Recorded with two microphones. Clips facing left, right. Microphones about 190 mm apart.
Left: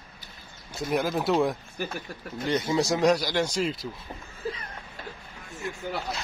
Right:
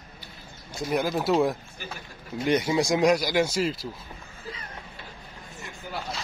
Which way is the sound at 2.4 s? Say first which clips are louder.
Right 2 dB; 15° right (ahead or behind).